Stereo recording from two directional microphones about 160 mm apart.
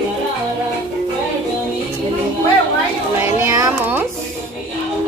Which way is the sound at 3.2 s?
15° right (ahead or behind).